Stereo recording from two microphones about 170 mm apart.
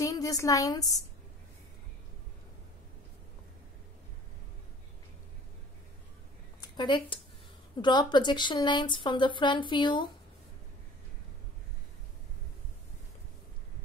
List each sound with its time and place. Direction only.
0.0 s a woman's voice: 20° left (ahead or behind)
6.8 s speech: 30° left (ahead or behind)